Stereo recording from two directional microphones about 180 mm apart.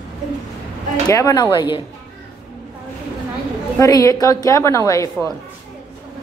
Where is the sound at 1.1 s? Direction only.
20° left (ahead or behind).